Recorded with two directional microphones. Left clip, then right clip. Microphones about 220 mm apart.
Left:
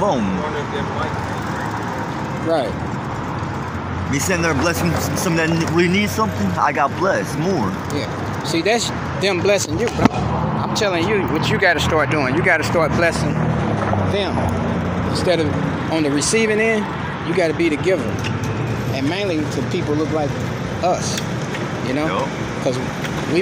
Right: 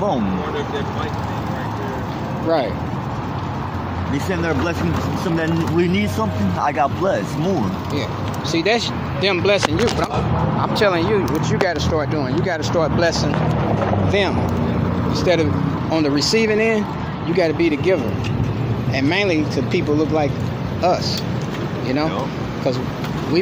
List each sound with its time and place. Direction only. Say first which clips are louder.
4.1 s speech: left 3 dB; 35° left (ahead or behind)
5.8 s speech: left 3 dB; 5° left (ahead or behind)
6.6 s speech: left 1 dB; 10° right (ahead or behind)
8.5 s speech: even; 5° left (ahead or behind)
10.6 s speech: right 3 dB; 20° right (ahead or behind); by 13.1 s centre (ahead or behind)
15.1 s speech: even; centre (ahead or behind)
18.9 s speech: right 4 dB; 10° right (ahead or behind)
21.9 s speech: left 1 dB; centre (ahead or behind)